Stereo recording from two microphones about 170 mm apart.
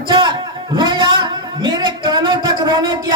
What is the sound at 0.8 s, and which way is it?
A man's voice, 30° right (ahead or behind).